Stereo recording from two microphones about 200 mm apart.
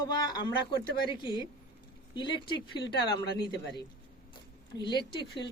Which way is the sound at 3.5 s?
55° left (ahead or behind).